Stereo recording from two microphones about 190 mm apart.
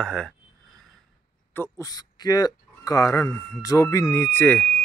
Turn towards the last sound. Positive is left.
turn(degrees=10)  # may be behind; listen again after turning